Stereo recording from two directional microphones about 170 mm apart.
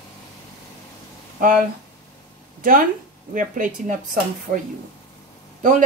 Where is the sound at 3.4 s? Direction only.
55° right (ahead or behind).